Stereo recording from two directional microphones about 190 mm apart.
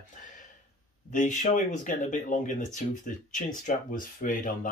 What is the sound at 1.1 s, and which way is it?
Speech, 40° left (ahead or behind).